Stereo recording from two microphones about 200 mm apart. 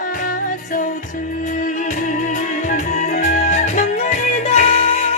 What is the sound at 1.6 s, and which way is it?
Music, 40° left (ahead or behind).